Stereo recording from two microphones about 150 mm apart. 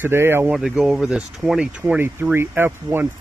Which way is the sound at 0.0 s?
15° right (ahead or behind).